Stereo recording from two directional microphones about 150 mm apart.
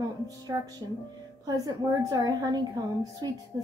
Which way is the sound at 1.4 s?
25° right (ahead or behind).